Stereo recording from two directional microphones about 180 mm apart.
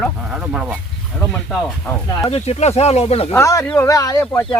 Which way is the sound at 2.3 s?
35° left (ahead or behind).